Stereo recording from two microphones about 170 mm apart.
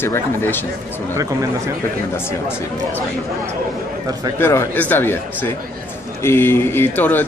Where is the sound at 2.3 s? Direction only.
15° left (ahead or behind).